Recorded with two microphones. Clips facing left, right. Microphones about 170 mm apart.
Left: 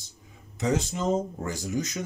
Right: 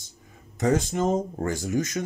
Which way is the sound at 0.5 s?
50° right (ahead or behind).